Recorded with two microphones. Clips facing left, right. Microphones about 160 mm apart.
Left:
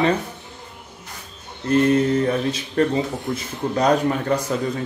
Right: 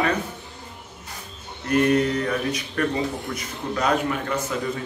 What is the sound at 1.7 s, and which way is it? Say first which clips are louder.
Speech: left 3 dB; 30° left (ahead or behind).